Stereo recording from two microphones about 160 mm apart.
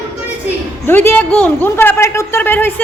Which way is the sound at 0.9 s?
15° left (ahead or behind).